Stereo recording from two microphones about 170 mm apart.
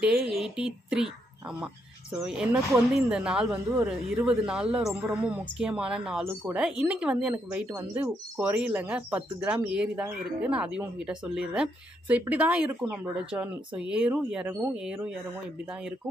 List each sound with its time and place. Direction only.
0.0 s speech: 5° right (ahead or behind)
2.1 s speech: 5° right (ahead or behind)
3.5 s speech: 15° right (ahead or behind)
4.2 s speech: 5° right (ahead or behind)